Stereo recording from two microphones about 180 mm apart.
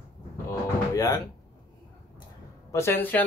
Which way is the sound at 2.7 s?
15° left (ahead or behind).